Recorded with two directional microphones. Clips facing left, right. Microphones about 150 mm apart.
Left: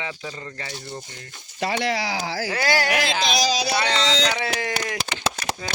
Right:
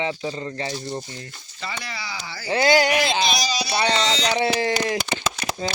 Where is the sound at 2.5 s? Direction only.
20° right (ahead or behind).